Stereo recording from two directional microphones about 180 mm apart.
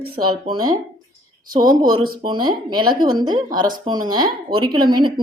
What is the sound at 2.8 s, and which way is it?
Speech, 50° right (ahead or behind).